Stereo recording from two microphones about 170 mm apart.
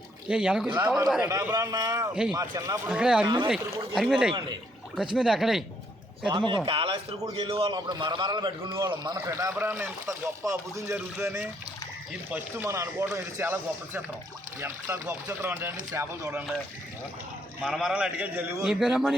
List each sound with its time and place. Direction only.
0.3 s a man's voice: 5° right (ahead or behind)
0.8 s a man's voice: 15° right (ahead or behind)
2.9 s a man's voice: 5° right (ahead or behind)
3.2 s a man's voice: 25° right (ahead or behind)
3.5 s a man's voice: centre (ahead or behind)
6.2 s a man's voice: 30° right (ahead or behind)
17.6 s a man's voice: 5° right (ahead or behind)